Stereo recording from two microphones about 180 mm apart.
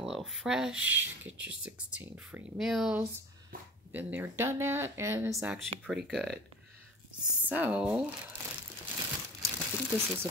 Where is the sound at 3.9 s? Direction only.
10° right (ahead or behind).